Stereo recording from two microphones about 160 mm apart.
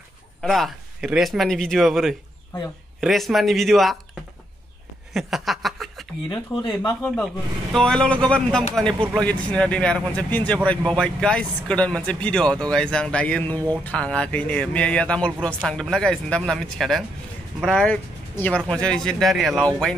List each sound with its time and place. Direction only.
0.4 s speech: centre (ahead or behind)
5.1 s chuckle: centre (ahead or behind)
6.2 s speech: 30° left (ahead or behind)
7.7 s speech: 5° left (ahead or behind)